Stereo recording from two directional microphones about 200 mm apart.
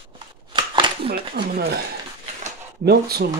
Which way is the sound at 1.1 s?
50° right (ahead or behind).